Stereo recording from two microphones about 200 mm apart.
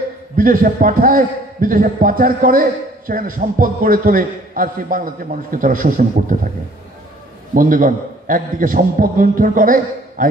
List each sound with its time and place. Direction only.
0.4 s a man's voice: 45° right (ahead or behind)
7.5 s a man's voice: 40° right (ahead or behind)